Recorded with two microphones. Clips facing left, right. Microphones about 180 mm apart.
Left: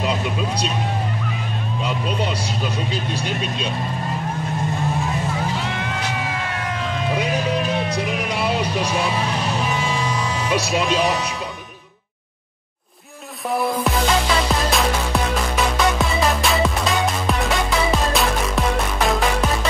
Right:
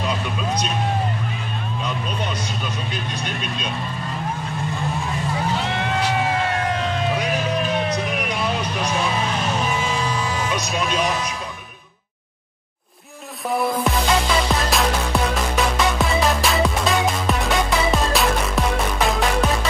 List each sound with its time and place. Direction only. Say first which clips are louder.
2.9 s speech: left 3 dB; 30° left (ahead or behind)
10.5 s speech: left 4 dB; 30° left (ahead or behind)
13.5 s music: even; centre (ahead or behind)